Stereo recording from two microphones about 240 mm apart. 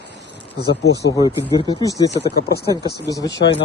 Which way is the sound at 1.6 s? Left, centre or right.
Centre.